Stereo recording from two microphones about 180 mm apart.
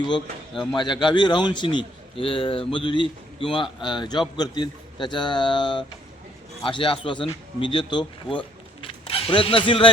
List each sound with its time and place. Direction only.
0.8 s a man's voice: 25° left (ahead or behind)